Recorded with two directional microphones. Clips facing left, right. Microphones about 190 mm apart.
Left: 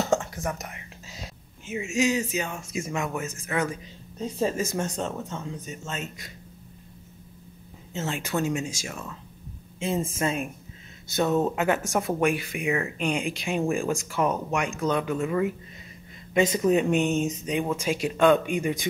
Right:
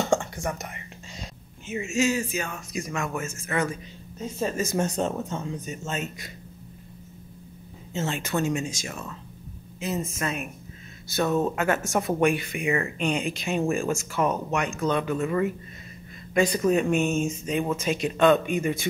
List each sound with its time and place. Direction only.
0.0 s speech: centre (ahead or behind)
4.7 s speech: 10° right (ahead or behind)
7.9 s speech: 5° left (ahead or behind)
9.8 s a woman's voice: 25° left (ahead or behind); by 15.5 s 10° left (ahead or behind)
16.3 s a woman's voice: 20° left (ahead or behind)